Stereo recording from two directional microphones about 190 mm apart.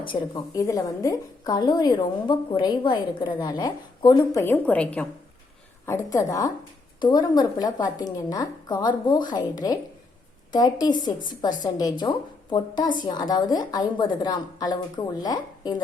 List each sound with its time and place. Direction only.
0.0 s a woman's voice: 25° left (ahead or behind)
4.4 s a woman's voice: 10° left (ahead or behind)